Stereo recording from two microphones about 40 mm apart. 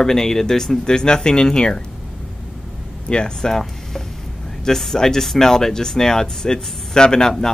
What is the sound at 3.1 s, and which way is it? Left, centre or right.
Speech, left.